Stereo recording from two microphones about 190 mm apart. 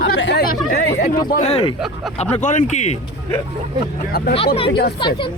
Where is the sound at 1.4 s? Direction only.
30° left (ahead or behind).